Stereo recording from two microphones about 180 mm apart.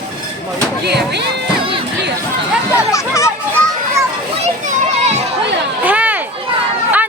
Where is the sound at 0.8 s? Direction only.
70° right (ahead or behind).